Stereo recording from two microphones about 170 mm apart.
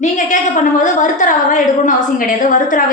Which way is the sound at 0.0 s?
45° left (ahead or behind).